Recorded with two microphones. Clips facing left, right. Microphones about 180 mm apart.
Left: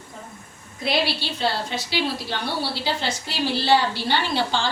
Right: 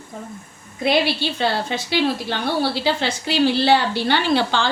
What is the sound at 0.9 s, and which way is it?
A woman's voice, 55° right (ahead or behind).